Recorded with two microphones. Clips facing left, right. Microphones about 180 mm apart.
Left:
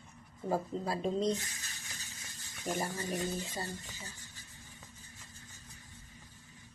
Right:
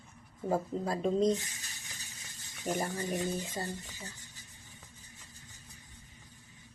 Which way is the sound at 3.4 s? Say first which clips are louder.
Right 2 dB; 45° right (ahead or behind).